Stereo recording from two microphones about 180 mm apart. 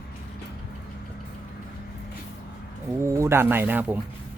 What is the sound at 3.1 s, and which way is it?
Speech, 15° right (ahead or behind).